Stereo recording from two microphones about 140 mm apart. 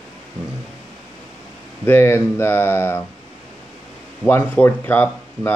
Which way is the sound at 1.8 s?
15° left (ahead or behind).